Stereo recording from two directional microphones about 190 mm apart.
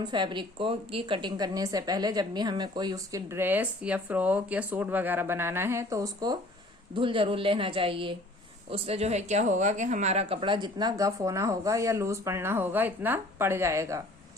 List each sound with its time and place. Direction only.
0.0 s a woman's voice: 25° right (ahead or behind)